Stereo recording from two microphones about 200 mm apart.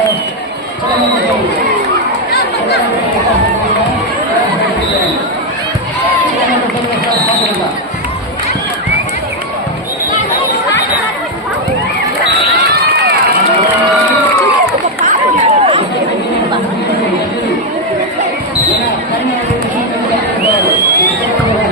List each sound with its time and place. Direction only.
15.0 s run: 35° right (ahead or behind)